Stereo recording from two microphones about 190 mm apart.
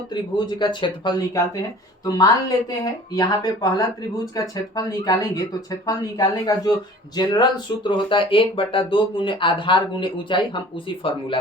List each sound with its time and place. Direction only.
0.1 s speech: 25° left (ahead or behind)
7.9 s speech: 25° left (ahead or behind)